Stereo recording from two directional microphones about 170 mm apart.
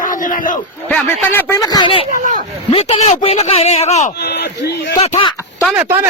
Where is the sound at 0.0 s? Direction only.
50° left (ahead or behind).